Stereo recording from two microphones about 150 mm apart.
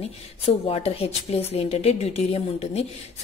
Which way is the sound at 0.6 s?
40° left (ahead or behind).